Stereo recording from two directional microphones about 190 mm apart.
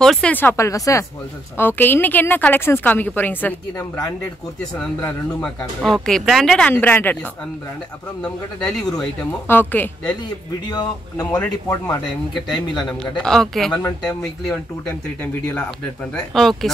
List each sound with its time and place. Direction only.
0.0 s a woman's voice: 5° left (ahead or behind)
8.2 s speech: 5° left (ahead or behind)
10.7 s speech: 20° left (ahead or behind)
11.2 s a woman's voice: 5° left (ahead or behind)
11.5 s a woman's voice: 15° left (ahead or behind)
12.7 s speech: 5° left (ahead or behind)
16.1 s speech: centre (ahead or behind)